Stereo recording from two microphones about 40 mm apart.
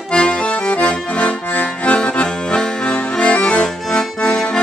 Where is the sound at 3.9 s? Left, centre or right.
Centre.